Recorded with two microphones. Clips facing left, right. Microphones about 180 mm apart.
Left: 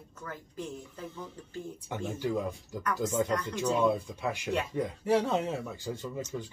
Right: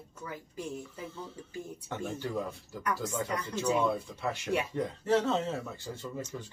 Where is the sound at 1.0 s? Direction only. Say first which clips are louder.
Even; 15° left (ahead or behind).